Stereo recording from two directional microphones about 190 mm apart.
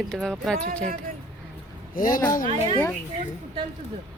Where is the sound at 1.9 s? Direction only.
45° left (ahead or behind).